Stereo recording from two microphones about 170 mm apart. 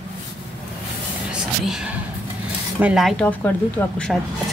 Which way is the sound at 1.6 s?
5° right (ahead or behind).